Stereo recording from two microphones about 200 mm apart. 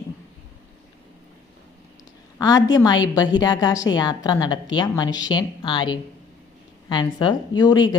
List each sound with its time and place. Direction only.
2.4 s a woman's voice: 20° left (ahead or behind)